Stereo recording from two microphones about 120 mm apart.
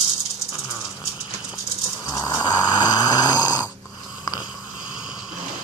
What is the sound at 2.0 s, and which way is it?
Snoring, 20° left (ahead or behind).